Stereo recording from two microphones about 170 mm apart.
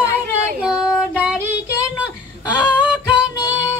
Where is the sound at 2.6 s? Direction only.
10° right (ahead or behind).